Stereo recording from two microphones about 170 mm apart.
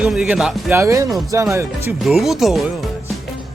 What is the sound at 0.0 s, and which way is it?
Speech, 5° right (ahead or behind).